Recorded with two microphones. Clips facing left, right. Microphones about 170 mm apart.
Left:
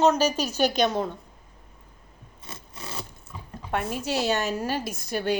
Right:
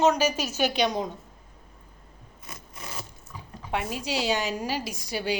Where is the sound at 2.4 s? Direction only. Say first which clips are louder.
Left 2 dB; 30° left (ahead or behind).